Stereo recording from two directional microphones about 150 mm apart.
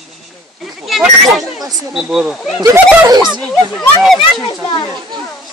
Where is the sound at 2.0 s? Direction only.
5° right (ahead or behind).